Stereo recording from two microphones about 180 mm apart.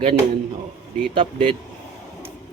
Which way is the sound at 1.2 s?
30° right (ahead or behind).